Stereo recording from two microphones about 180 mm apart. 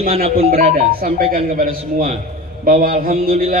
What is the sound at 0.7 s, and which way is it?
A man's voice, 50° right (ahead or behind).